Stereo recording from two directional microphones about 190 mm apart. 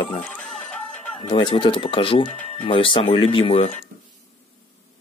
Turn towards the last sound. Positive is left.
turn(degrees=30)  # may be behind; listen again after turning